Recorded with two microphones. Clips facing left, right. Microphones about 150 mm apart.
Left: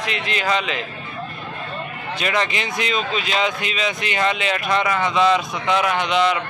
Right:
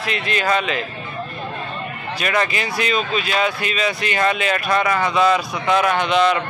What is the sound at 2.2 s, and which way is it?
A man's voice, 20° left (ahead or behind).